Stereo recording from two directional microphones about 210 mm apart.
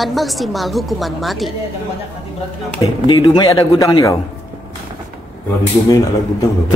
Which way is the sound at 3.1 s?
20° left (ahead or behind).